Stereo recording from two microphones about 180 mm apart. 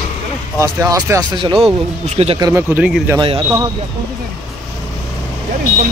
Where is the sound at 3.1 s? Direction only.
30° right (ahead or behind).